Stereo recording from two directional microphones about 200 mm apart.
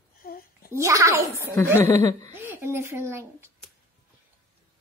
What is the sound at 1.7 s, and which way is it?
Speech, 15° left (ahead or behind).